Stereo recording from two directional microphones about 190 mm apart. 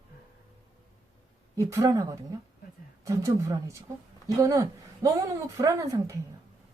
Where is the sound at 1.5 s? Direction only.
20° right (ahead or behind).